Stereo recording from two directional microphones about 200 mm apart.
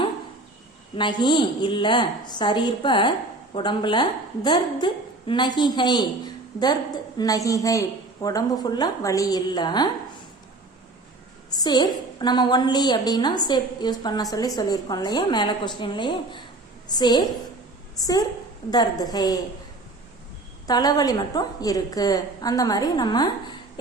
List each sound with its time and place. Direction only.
0.9 s a woman's voice: 25° left (ahead or behind)
11.5 s a woman's voice: 20° left (ahead or behind)
20.7 s a woman's voice: 20° left (ahead or behind)